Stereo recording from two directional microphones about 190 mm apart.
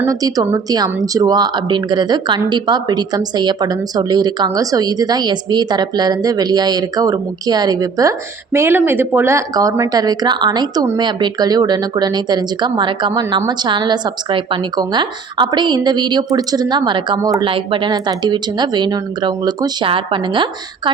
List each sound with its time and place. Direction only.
0.0 s speech: 20° right (ahead or behind)